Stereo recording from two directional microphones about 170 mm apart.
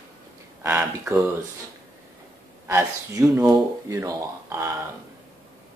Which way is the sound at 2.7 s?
15° right (ahead or behind).